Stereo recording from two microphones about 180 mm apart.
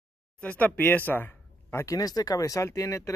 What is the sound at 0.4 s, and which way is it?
Speech, 10° left (ahead or behind).